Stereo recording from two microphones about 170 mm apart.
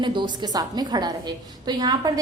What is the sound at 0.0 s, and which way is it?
A woman's voice, 25° right (ahead or behind).